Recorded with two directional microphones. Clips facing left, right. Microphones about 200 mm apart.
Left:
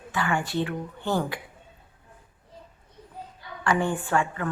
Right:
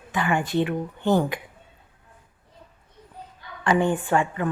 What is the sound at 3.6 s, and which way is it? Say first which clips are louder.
Speech: right 4 dB; 20° right (ahead or behind).